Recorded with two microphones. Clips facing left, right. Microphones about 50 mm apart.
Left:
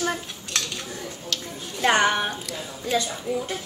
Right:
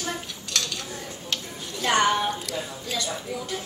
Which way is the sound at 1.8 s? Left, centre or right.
Left.